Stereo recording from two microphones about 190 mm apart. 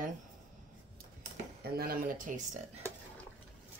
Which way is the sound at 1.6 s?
50° right (ahead or behind).